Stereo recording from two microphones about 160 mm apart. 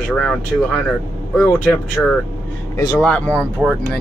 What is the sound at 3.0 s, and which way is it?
Speech, 5° left (ahead or behind).